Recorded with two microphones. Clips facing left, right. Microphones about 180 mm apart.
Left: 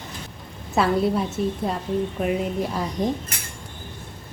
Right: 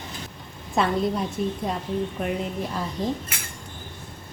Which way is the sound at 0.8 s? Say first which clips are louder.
Left 3 dB; 5° left (ahead or behind).